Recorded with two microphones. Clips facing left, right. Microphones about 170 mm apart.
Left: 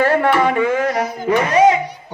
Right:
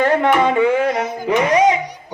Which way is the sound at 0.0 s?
15° right (ahead or behind).